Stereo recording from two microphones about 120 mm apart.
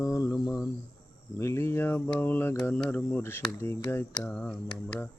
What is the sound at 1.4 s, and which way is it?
Cricket, 25° left (ahead or behind).